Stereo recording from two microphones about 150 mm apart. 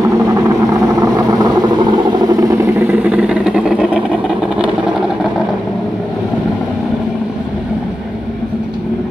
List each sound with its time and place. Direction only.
0.7 s vehicle: 25° right (ahead or behind)
2.9 s vehicle: 10° right (ahead or behind)